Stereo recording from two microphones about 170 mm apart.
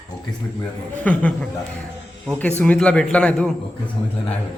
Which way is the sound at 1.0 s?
10° left (ahead or behind).